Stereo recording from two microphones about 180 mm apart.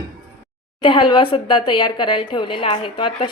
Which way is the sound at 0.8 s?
25° left (ahead or behind).